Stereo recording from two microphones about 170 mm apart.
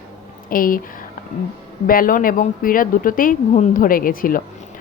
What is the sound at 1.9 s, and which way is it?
Speech, 55° left (ahead or behind).